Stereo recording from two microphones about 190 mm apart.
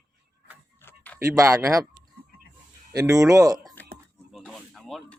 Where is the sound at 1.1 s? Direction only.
15° right (ahead or behind).